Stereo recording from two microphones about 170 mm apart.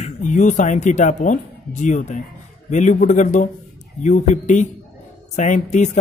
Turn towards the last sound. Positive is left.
turn(degrees=45)  # may be behind; listen again after turning